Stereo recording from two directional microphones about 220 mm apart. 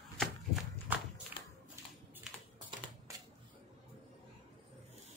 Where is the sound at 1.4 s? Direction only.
20° left (ahead or behind).